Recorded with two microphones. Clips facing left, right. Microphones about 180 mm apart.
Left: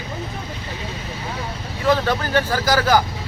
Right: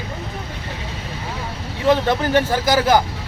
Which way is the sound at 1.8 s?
20° right (ahead or behind).